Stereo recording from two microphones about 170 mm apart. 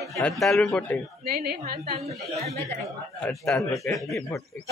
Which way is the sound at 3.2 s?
5° left (ahead or behind).